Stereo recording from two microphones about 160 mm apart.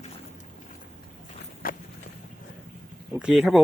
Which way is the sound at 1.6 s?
65° left (ahead or behind).